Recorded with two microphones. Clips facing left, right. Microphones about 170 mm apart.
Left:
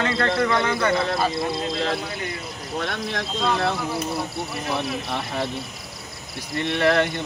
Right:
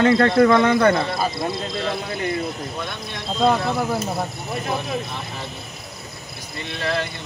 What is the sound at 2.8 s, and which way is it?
Speech, 90° left.